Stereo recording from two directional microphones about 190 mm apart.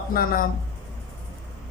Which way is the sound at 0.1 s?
50° left (ahead or behind).